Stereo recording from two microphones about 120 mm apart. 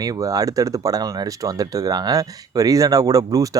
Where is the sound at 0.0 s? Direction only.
30° right (ahead or behind).